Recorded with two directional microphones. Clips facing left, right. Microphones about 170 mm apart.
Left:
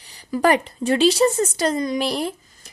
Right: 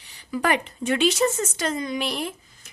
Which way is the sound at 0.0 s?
35° left (ahead or behind).